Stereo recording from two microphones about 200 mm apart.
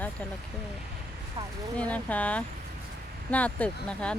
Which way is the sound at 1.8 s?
5° left (ahead or behind).